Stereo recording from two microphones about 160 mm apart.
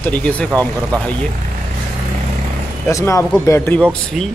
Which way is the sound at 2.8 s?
20° left (ahead or behind).